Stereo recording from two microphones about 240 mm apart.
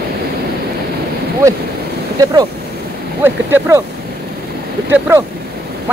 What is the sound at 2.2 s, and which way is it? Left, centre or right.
Speech, centre.